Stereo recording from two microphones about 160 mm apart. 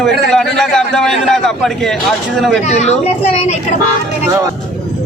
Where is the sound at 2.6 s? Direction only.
45° left (ahead or behind).